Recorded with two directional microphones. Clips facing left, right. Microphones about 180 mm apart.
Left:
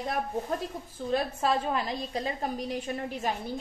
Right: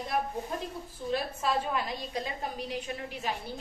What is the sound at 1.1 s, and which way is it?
Speech, 35° left (ahead or behind).